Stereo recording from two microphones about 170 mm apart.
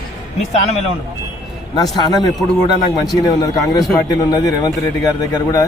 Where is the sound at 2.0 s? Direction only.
25° left (ahead or behind).